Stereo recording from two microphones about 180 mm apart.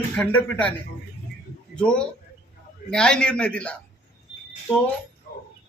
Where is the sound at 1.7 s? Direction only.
5° left (ahead or behind).